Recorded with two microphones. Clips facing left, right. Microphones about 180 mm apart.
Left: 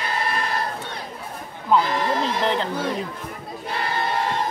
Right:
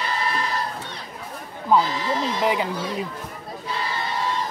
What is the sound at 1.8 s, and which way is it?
Speech, 55° left (ahead or behind).